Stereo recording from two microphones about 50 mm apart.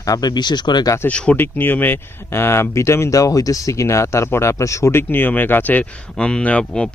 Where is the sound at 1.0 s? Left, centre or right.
Left.